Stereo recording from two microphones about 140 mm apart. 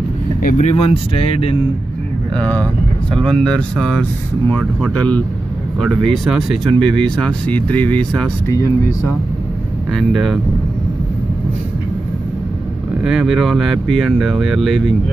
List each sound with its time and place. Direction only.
0.4 s speech: 75° left (ahead or behind)
0.7 s speech: 45° left (ahead or behind)
2.5 s speech: 10° left (ahead or behind)
6.0 s speech: centre (ahead or behind)
8.5 s speech: 20° left (ahead or behind)
9.9 s speech: centre (ahead or behind)
13.0 s speech: 5° right (ahead or behind)